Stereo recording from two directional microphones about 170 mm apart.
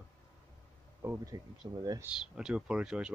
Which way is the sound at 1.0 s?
15° right (ahead or behind).